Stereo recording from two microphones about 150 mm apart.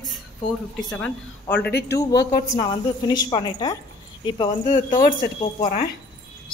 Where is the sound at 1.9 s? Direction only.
25° left (ahead or behind).